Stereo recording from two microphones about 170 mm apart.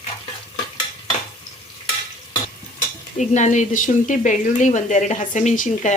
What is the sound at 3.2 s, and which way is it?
A woman's voice, 45° left (ahead or behind).